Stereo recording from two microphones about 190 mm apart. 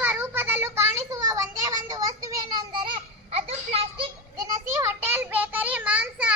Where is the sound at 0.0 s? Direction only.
10° right (ahead or behind); by 3.8 s 30° right (ahead or behind).